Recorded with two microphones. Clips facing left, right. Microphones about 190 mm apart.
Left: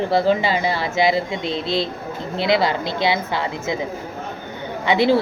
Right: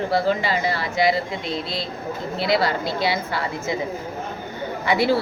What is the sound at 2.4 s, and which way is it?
Speech, 25° left (ahead or behind).